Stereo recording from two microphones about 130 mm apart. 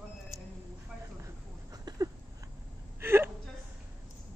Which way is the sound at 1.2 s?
30° right (ahead or behind).